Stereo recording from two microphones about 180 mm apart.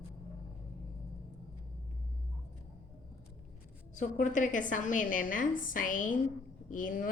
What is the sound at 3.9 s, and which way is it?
A woman's voice, 45° left (ahead or behind).